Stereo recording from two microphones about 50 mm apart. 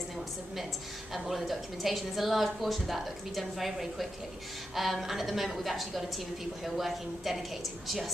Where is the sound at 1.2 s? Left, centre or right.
Centre.